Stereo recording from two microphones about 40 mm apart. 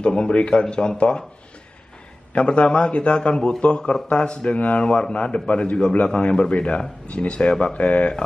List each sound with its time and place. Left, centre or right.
0.0 s speech: left
2.3 s speech: left
4.6 s speech: left